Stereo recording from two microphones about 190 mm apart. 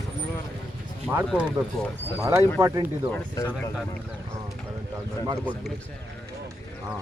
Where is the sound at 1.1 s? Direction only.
Centre (ahead or behind).